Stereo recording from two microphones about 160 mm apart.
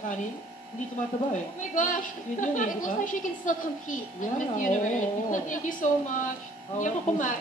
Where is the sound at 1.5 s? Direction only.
55° left (ahead or behind).